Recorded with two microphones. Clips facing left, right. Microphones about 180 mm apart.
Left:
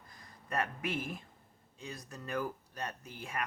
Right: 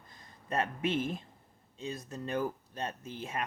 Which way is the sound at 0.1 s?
25° right (ahead or behind).